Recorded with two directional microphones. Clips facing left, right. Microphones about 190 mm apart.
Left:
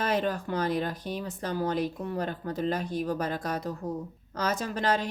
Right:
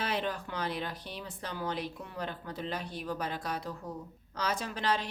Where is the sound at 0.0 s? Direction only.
45° left (ahead or behind).